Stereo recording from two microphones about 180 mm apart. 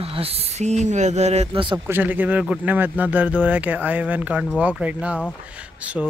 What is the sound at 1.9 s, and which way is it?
Speech, 10° right (ahead or behind).